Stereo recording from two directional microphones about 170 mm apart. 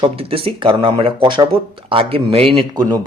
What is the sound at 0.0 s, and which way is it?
Speech, 30° right (ahead or behind).